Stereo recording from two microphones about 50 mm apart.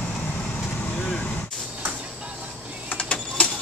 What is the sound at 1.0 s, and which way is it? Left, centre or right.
Vehicle, centre.